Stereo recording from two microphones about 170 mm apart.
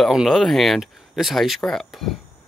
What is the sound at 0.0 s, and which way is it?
Speech, centre (ahead or behind).